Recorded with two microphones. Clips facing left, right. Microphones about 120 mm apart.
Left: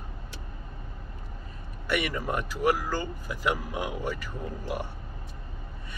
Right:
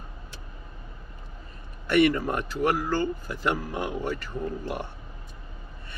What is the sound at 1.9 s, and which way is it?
Speech, 10° left (ahead or behind).